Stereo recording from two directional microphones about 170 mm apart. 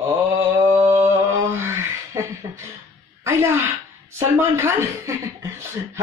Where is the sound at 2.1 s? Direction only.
15° right (ahead or behind).